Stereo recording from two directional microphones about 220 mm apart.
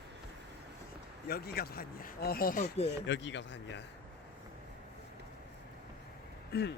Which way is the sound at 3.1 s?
55° left (ahead or behind).